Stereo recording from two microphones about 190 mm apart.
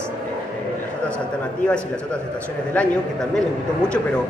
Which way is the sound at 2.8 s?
10° left (ahead or behind).